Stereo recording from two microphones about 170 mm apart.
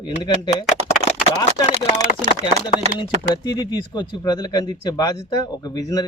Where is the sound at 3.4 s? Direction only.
25° left (ahead or behind).